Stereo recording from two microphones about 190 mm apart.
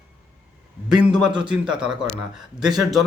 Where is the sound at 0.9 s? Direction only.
5° right (ahead or behind).